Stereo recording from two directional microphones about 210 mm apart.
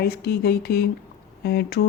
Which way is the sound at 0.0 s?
50° left (ahead or behind).